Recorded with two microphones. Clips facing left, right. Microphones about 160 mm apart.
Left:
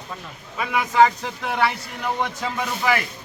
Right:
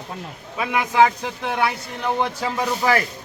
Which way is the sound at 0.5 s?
10° right (ahead or behind).